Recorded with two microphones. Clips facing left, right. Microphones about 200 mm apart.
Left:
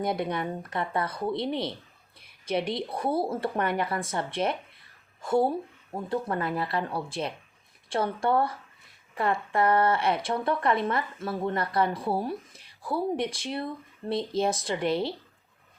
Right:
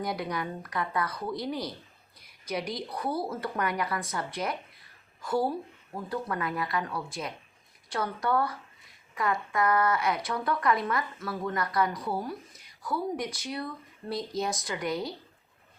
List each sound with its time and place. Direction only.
0.0 s speech: 25° left (ahead or behind)